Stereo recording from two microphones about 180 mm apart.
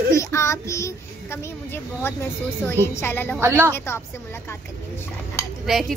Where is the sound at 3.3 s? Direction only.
15° right (ahead or behind).